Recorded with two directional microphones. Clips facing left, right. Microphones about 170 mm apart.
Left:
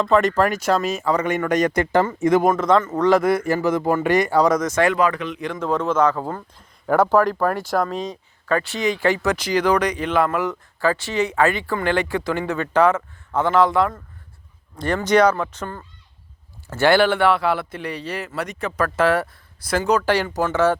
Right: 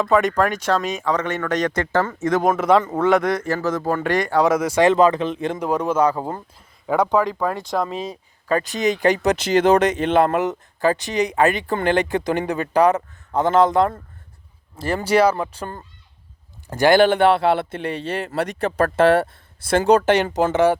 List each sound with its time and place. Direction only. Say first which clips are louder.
0.0 s speech: even; centre (ahead or behind)
2.5 s speech: right 1 dB; 10° right (ahead or behind); by 4.4 s 10° left (ahead or behind)
4.4 s speech: right 1 dB; 10° right (ahead or behind)
4.9 s speech: right 4 dB; 25° right (ahead or behind)
5.5 s speech: left 1 dB; 10° right (ahead or behind)
6.8 s speech: left 2 dB; centre (ahead or behind)
8.6 s speech: right 2 dB; 20° right (ahead or behind)
13.7 s speech: right 2 dB; 30° right (ahead or behind)
15.0 s speech: left 1 dB; 10° right (ahead or behind)
15.3 s speech: even; 25° right (ahead or behind)